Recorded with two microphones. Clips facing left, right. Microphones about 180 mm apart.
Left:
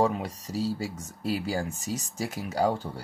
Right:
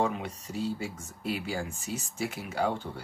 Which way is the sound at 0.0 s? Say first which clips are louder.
Left 4 dB; 35° left (ahead or behind).